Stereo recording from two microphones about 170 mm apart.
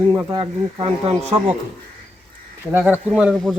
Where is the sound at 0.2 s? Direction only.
25° right (ahead or behind).